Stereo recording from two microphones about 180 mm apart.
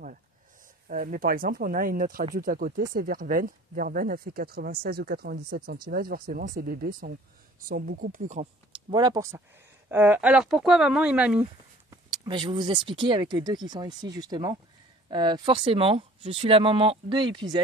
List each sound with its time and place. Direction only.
0.8 s speech: 50° right (ahead or behind)
8.7 s speech: 25° right (ahead or behind); by 11.4 s 5° right (ahead or behind)
11.9 s speech: 25° right (ahead or behind)